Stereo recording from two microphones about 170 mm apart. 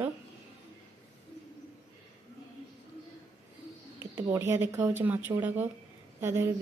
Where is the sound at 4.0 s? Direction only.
15° right (ahead or behind).